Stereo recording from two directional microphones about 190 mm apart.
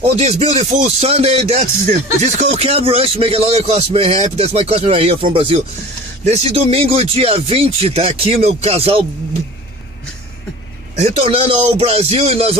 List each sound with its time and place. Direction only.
0.0 s rapping: 35° right (ahead or behind)
11.0 s rapping: 30° right (ahead or behind)